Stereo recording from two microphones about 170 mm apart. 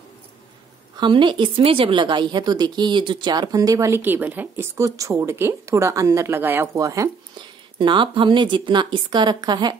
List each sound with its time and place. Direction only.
0.9 s speech: 30° right (ahead or behind)